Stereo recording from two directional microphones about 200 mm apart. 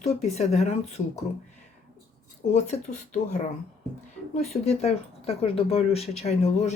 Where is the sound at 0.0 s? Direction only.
35° left (ahead or behind).